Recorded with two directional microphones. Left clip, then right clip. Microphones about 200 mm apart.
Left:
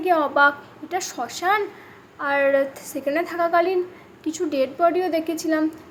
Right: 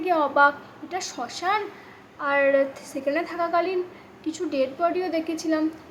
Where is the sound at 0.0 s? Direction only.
15° left (ahead or behind).